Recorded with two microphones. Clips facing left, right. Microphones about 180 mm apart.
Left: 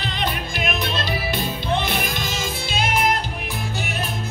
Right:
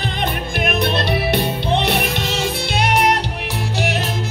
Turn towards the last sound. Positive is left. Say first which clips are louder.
# right 4 dB
turn(degrees=-70)  # may be behind; listen again after turning